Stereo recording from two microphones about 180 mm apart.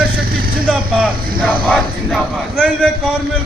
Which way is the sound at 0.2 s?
55° right (ahead or behind).